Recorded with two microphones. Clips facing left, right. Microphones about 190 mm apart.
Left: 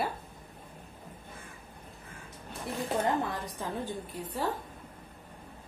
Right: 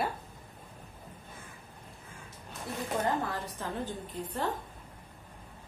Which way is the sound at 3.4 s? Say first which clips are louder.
Left 1 dB; 10° left (ahead or behind).